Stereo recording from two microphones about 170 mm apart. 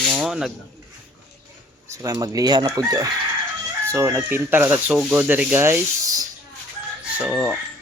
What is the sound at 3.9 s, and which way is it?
Rub, 10° right (ahead or behind).